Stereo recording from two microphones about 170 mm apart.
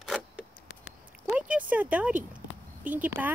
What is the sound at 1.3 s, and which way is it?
Speech, 10° right (ahead or behind).